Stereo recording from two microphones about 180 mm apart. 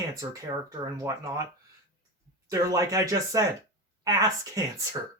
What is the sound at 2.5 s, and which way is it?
Speech, 20° right (ahead or behind).